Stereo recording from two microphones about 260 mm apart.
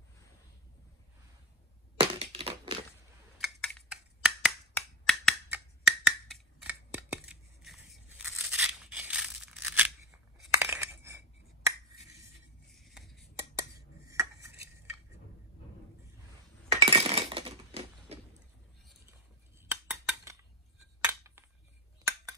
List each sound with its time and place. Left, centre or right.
2.0 s crushing: right
3.3 s computer keyboard: centre
4.7 s finger snapping: centre
10.5 s a sound: centre
12.7 s a sound: centre
13.6 s cutlery: centre
16.8 s chink: right
19.7 s cutlery: centre
21.1 s a sound: centre